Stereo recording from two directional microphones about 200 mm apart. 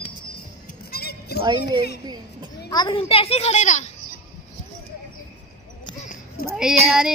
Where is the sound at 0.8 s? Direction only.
50° left (ahead or behind).